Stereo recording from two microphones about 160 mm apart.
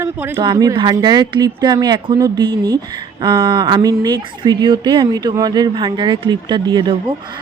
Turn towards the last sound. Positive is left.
turn(degrees=-30)  # may be behind; listen again after turning